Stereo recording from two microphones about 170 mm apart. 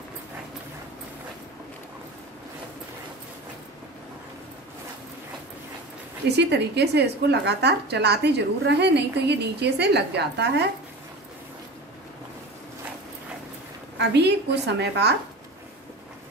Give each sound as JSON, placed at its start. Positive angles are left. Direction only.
{"t": 6.2, "sound": "a woman's voice", "side_deg": -80}
{"t": 13.9, "sound": "a woman's voice", "side_deg": -80}